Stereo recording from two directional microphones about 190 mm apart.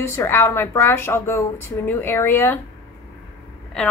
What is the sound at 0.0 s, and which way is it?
A woman's voice, 15° left (ahead or behind).